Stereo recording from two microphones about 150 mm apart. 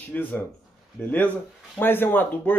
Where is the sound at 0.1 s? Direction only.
10° left (ahead or behind).